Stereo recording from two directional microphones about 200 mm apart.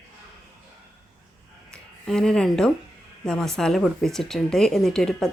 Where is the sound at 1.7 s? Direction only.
5° left (ahead or behind).